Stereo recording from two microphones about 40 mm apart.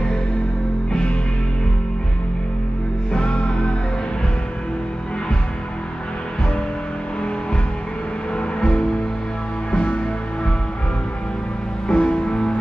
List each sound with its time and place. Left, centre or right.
3.1 s music: left
8.5 s music: left
11.9 s music: left